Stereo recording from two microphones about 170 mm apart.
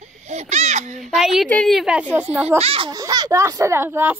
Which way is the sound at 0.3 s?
40° right (ahead or behind).